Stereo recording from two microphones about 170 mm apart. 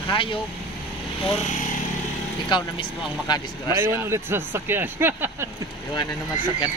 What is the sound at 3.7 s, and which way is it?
Speech, 15° right (ahead or behind).